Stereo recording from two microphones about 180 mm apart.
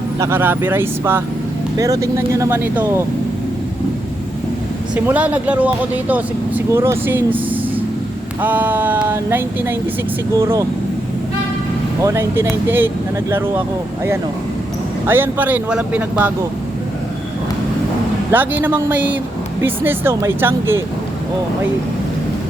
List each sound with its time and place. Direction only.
0.2 s speech: 15° right (ahead or behind)
4.9 s speech: 10° right (ahead or behind)
12.0 s speech: 15° right (ahead or behind)
15.0 s speech: 10° right (ahead or behind)
18.3 s speech: 10° right (ahead or behind)